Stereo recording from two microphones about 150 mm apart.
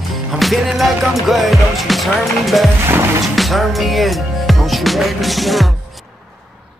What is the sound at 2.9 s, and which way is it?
Speech, 15° right (ahead or behind).